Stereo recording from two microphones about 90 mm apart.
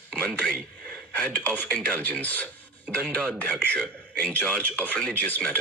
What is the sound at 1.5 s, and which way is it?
Speech, 15° left (ahead or behind).